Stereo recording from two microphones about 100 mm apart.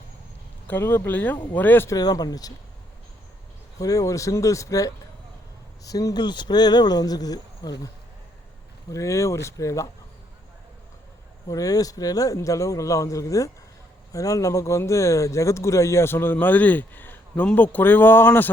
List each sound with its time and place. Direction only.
0.7 s speech: 25° left (ahead or behind)
1.9 s speech: 40° left (ahead or behind)
3.8 s speech: 35° left (ahead or behind)
8.9 s speech: 30° left (ahead or behind)
11.4 s speech: 35° left (ahead or behind); by 18.5 s 20° left (ahead or behind)